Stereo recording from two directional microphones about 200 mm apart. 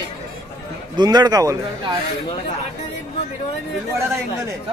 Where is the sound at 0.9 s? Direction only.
20° right (ahead or behind).